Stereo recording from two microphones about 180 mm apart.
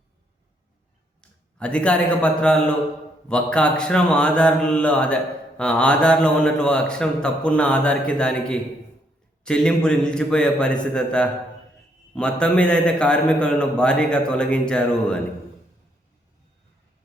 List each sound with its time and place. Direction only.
1.2 s a man's voice: 5° left (ahead or behind)
3.2 s mantra: 5° left (ahead or behind)